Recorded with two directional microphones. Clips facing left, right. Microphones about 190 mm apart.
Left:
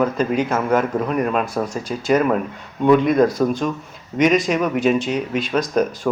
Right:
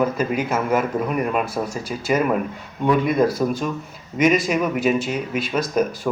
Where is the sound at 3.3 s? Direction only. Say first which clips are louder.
Left 2 dB; 15° left (ahead or behind).